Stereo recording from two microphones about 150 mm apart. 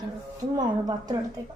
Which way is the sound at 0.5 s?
30° right (ahead or behind).